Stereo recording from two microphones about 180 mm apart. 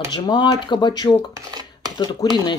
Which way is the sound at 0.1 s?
25° left (ahead or behind).